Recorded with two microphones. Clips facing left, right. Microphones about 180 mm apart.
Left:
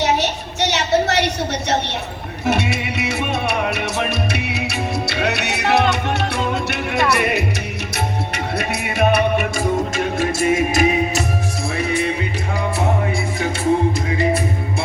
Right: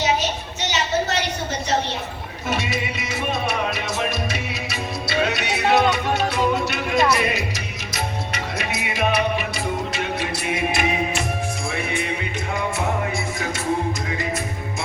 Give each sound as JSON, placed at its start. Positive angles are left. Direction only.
{"t": 0.0, "sound": "a sound", "side_deg": 70}
{"t": 2.5, "sound": "music", "side_deg": 70}
{"t": 8.5, "sound": "music", "side_deg": 55}